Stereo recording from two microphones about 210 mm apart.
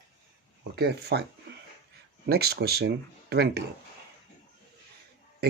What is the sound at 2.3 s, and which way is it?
Speech, 50° right (ahead or behind).